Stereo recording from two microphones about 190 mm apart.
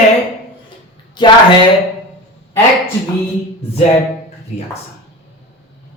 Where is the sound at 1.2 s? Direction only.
25° left (ahead or behind).